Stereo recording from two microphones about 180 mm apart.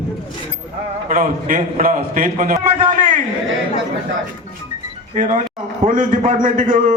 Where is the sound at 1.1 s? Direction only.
50° right (ahead or behind).